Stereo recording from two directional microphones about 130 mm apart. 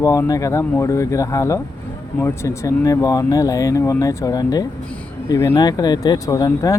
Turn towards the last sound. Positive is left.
turn(degrees=25)  # may be behind; listen again after turning